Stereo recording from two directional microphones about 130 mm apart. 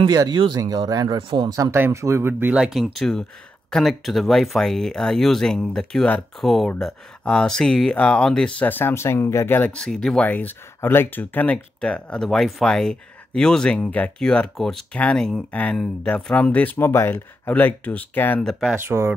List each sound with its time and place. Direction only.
0.0 s speech: 35° right (ahead or behind)
1.1 s speech: 40° right (ahead or behind)
1.5 s speech: 20° right (ahead or behind); by 18.5 s 15° left (ahead or behind)
18.5 s speech: centre (ahead or behind)
18.8 s speech: 20° right (ahead or behind)